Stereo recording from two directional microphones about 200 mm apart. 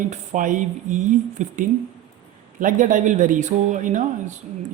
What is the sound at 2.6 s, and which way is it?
Speech, 40° right (ahead or behind).